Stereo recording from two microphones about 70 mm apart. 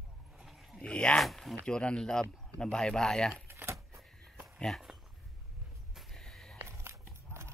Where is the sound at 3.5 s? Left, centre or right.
Right.